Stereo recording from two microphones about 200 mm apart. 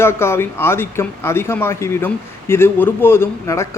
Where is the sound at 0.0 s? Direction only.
10° left (ahead or behind).